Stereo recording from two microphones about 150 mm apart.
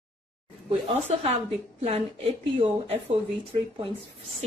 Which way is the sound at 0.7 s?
45° right (ahead or behind).